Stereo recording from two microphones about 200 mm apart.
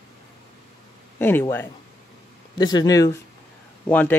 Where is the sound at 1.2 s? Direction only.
10° left (ahead or behind).